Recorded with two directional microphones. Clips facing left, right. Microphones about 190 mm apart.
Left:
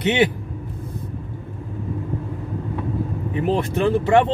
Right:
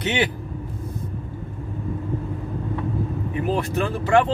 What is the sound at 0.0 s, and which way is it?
Speech, 25° left (ahead or behind).